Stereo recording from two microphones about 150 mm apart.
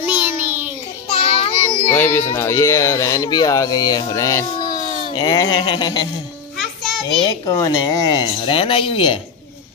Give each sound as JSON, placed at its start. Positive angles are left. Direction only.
{"t": 0.0, "sound": "child singing", "side_deg": -10}
{"t": 1.0, "sound": "child singing", "side_deg": 40}
{"t": 1.9, "sound": "a sound", "side_deg": 15}
{"t": 2.3, "sound": "speech", "side_deg": 20}
{"t": 5.1, "sound": "speech", "side_deg": 30}
{"t": 6.6, "sound": "child singing", "side_deg": 0}
{"t": 7.2, "sound": "speech", "side_deg": 25}